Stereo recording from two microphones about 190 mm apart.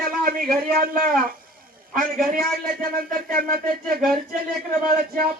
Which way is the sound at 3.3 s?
50° right (ahead or behind).